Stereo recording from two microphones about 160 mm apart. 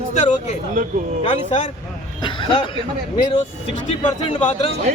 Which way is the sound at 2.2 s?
30° left (ahead or behind).